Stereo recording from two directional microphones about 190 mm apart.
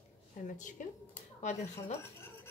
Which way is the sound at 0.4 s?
45° left (ahead or behind).